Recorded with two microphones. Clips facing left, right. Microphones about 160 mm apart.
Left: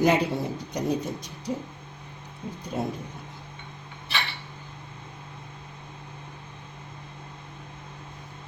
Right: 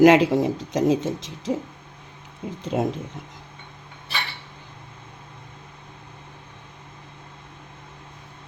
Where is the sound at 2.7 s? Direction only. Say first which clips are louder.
Right 6 dB; 80° right.